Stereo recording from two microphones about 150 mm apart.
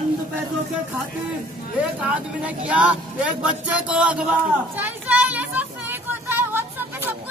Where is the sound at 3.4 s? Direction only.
5° right (ahead or behind).